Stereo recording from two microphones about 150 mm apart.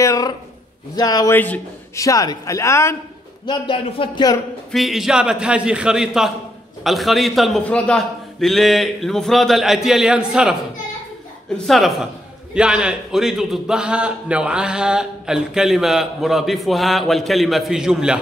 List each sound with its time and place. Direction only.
0.0 s a man's voice: 25° left (ahead or behind)
3.4 s speech: 35° left (ahead or behind)
4.7 s a man's voice: centre (ahead or behind)
11.5 s a man's voice: centre (ahead or behind)